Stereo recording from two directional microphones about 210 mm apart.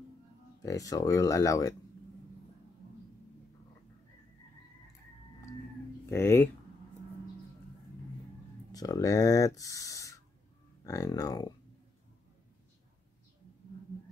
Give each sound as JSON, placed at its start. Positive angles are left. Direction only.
{"t": 0.6, "sound": "speech", "side_deg": 15}
{"t": 6.0, "sound": "speech", "side_deg": 10}
{"t": 8.7, "sound": "speech", "side_deg": 15}